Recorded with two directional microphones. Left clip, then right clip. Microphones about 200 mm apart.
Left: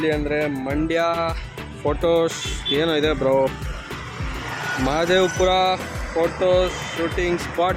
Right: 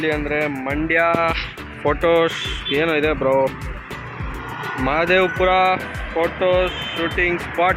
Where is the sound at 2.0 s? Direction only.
15° left (ahead or behind).